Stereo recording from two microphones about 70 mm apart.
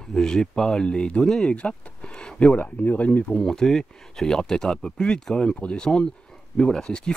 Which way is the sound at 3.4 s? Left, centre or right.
Centre.